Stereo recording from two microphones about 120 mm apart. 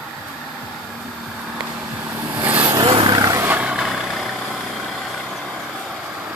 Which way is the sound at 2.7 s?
40° right (ahead or behind).